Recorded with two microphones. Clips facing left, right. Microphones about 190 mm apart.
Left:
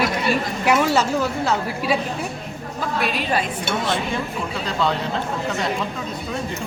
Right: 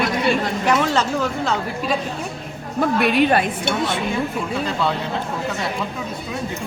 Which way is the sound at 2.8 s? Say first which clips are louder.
Right 8 dB; 60° right (ahead or behind).